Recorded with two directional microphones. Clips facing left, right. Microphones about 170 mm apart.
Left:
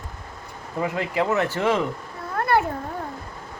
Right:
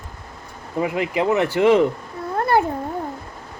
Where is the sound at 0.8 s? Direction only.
20° right (ahead or behind).